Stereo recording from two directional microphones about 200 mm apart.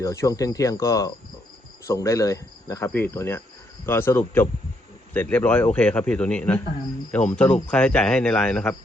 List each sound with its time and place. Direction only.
0.0 s cricket: 15° left (ahead or behind)
7.1 s speech: 5° left (ahead or behind)